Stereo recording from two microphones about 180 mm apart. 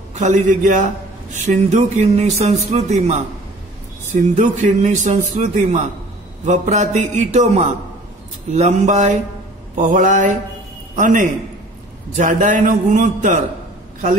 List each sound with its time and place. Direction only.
0.1 s a man's voice: 40° right (ahead or behind)
9.8 s mantra: 45° right (ahead or behind)